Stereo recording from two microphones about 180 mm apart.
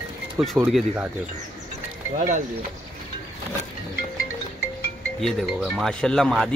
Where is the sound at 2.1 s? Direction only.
45° right (ahead or behind).